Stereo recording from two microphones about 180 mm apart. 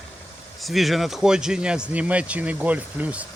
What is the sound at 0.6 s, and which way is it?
Speech, centre (ahead or behind).